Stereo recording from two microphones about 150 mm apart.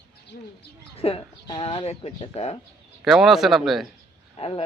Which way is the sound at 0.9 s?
40° left (ahead or behind).